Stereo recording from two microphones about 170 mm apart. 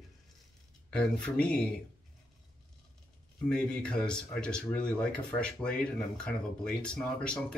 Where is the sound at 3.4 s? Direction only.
5° left (ahead or behind).